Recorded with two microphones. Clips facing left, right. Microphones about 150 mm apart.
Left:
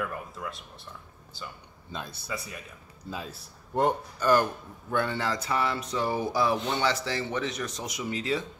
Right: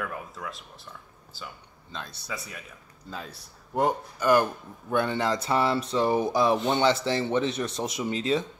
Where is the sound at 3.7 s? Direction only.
5° right (ahead or behind); by 8.4 s 25° right (ahead or behind).